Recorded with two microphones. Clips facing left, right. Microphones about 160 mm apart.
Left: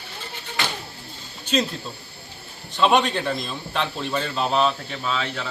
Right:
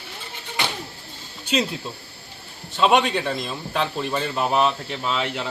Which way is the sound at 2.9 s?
Centre (ahead or behind).